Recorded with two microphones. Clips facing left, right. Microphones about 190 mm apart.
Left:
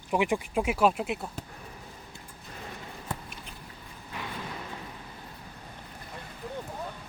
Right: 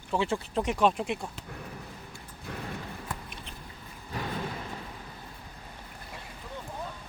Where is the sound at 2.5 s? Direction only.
65° right (ahead or behind).